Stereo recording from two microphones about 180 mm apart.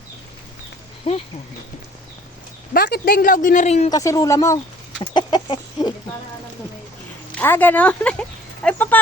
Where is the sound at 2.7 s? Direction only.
55° left (ahead or behind); by 3.9 s 40° left (ahead or behind).